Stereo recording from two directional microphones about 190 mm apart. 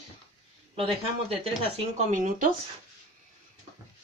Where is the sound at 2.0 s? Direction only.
45° right (ahead or behind).